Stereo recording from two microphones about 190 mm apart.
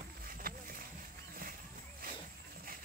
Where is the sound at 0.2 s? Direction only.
50° right (ahead or behind).